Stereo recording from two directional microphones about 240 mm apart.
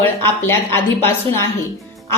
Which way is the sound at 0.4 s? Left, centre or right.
Centre.